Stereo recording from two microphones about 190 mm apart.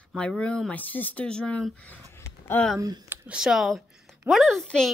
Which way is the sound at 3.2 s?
5° right (ahead or behind).